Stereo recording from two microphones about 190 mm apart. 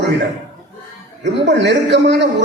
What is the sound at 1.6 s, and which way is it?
Speech, 70° right (ahead or behind).